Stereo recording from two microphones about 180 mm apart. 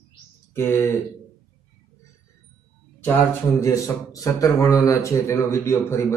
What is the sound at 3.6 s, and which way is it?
Speech, 15° left (ahead or behind).